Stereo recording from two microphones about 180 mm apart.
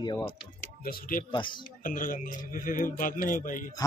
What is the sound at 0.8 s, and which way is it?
Speech, 55° left (ahead or behind).